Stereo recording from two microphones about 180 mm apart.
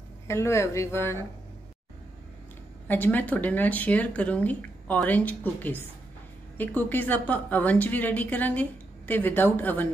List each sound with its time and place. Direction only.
0.3 s a woman's voice: 15° left (ahead or behind)
2.9 s a woman's voice: 10° left (ahead or behind)